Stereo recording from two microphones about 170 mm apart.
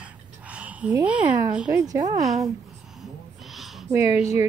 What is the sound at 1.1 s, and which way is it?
Speech, 10° right (ahead or behind).